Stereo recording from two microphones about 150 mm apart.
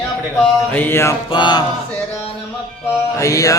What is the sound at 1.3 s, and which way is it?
Music, 30° left (ahead or behind).